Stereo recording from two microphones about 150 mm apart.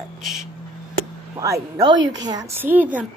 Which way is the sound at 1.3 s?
20° right (ahead or behind).